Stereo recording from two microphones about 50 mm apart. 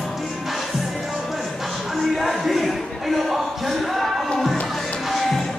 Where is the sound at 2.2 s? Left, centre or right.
Centre.